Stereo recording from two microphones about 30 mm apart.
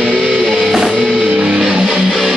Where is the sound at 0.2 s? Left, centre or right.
Centre.